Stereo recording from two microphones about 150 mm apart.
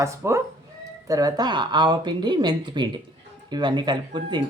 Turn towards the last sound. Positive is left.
turn(degrees=-30)  # may be behind; listen again after turning